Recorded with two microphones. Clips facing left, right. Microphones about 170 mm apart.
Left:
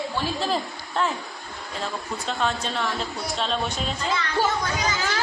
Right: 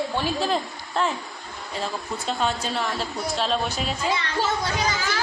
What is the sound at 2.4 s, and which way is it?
A woman's voice, 5° right (ahead or behind).